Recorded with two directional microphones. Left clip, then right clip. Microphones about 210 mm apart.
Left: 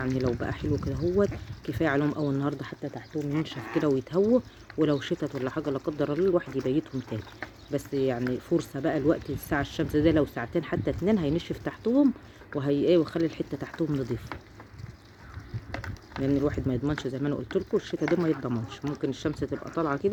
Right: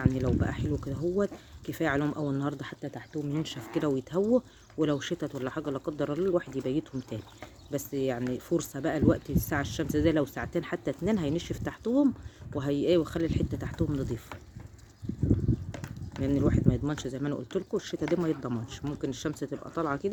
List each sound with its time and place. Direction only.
0.3 s speech: centre (ahead or behind)
15.7 s a sound: 25° right (ahead or behind)
16.2 s speech: centre (ahead or behind)